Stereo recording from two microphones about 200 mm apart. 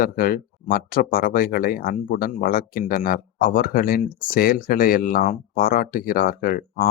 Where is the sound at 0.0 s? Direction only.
45° left (ahead or behind).